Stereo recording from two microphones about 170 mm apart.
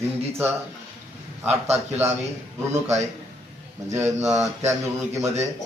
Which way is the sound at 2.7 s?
15° right (ahead or behind).